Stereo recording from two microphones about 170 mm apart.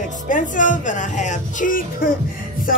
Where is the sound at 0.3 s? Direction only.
50° left (ahead or behind).